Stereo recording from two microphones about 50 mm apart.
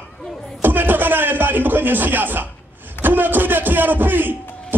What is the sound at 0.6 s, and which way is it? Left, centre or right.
A man's voice, right.